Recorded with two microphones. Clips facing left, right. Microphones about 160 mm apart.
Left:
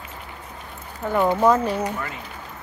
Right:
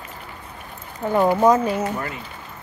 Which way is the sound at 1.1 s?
10° right (ahead or behind).